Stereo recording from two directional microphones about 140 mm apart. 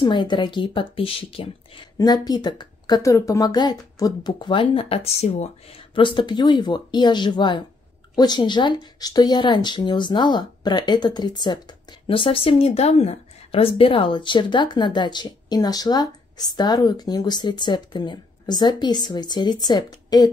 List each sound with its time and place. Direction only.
0.0 s a woman's voice: 35° left (ahead or behind)
2.2 s a woman's voice: 30° left (ahead or behind); by 5.5 s 50° left (ahead or behind)
5.9 s a woman's voice: 35° left (ahead or behind)
12.1 s a woman's voice: 40° left (ahead or behind)